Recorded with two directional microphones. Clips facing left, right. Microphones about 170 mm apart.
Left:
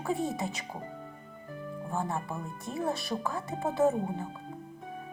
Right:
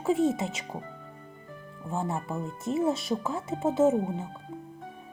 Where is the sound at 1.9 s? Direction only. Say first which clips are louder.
Right 3 dB; 25° right (ahead or behind).